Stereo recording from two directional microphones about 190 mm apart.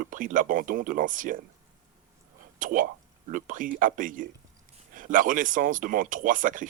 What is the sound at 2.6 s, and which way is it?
A man's voice, 45° right (ahead or behind).